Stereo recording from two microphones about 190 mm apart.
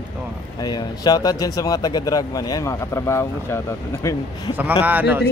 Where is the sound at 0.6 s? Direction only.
20° left (ahead or behind).